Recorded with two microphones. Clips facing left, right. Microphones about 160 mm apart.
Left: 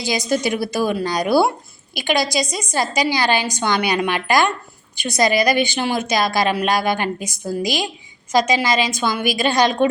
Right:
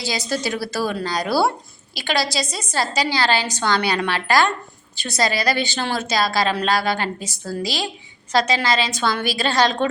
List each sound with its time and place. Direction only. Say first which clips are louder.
0.0 s a woman's voice: left 4 dB; 15° left (ahead or behind)